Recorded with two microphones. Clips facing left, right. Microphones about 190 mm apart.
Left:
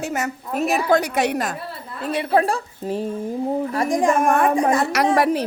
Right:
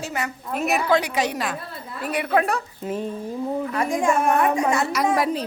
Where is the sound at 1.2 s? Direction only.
60° left (ahead or behind).